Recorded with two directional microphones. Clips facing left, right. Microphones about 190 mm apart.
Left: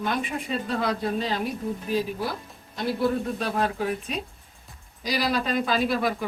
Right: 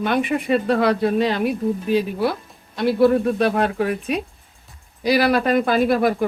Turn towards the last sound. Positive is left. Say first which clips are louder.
# right 7 dB
turn(degrees=-55)  # may be behind; listen again after turning